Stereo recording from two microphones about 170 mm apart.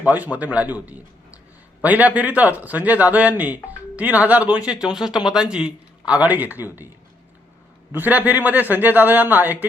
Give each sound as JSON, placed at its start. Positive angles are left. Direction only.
{"t": 0.0, "sound": "a man's voice", "side_deg": -10}
{"t": 7.9, "sound": "a man's voice", "side_deg": -10}